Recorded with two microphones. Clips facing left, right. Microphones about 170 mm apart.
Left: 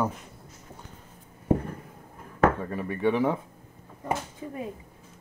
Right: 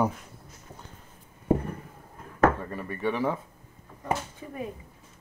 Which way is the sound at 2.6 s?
10° left (ahead or behind).